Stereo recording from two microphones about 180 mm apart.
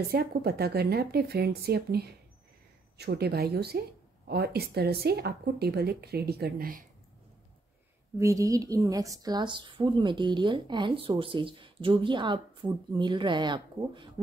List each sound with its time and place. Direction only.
0.1 s speech: 60° right (ahead or behind)
8.2 s a woman's voice: 20° right (ahead or behind)